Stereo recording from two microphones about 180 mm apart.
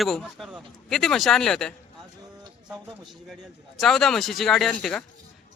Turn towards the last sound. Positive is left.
turn(degrees=5)  # may be behind; listen again after turning